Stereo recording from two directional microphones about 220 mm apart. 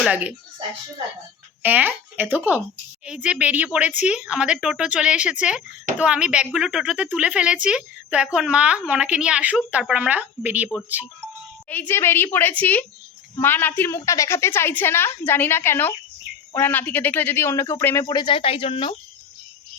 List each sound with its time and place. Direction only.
0.0 s speech: 5° right (ahead or behind)
1.6 s a woman's voice: 10° right (ahead or behind)
11.7 s a woman's voice: 10° left (ahead or behind); by 18.9 s 25° left (ahead or behind)